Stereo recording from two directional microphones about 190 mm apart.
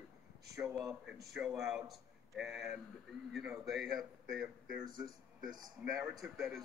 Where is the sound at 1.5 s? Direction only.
15° right (ahead or behind).